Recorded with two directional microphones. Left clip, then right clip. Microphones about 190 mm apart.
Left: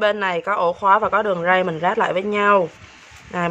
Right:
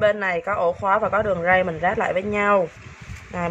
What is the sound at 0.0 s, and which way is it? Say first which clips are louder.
Speech: left 1 dB; 25° left (ahead or behind).